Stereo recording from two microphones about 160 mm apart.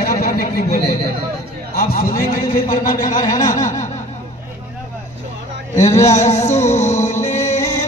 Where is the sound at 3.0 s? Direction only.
55° left (ahead or behind).